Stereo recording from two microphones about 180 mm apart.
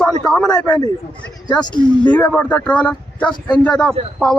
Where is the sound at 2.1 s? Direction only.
10° left (ahead or behind).